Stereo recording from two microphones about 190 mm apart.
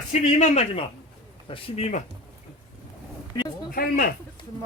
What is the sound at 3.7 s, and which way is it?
Speech, 50° left (ahead or behind).